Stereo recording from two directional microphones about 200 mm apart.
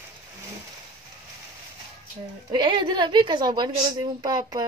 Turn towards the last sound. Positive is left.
turn(degrees=-20)  # may be behind; listen again after turning